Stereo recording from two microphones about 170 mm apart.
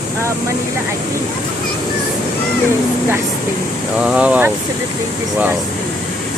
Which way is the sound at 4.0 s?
5° right (ahead or behind).